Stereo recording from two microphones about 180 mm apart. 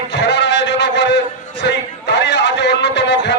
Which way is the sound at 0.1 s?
75° left (ahead or behind).